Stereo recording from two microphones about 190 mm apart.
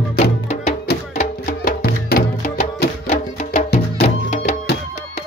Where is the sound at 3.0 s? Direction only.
35° left (ahead or behind).